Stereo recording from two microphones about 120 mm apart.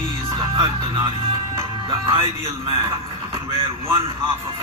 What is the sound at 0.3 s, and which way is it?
Music, 35° right (ahead or behind).